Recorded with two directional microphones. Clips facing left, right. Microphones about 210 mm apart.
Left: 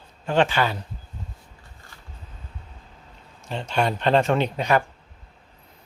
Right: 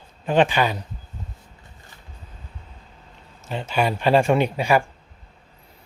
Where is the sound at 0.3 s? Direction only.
15° right (ahead or behind).